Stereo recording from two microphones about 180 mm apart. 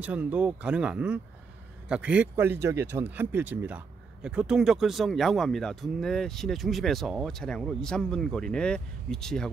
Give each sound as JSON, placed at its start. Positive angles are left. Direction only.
{"t": 0.0, "sound": "speech", "side_deg": -5}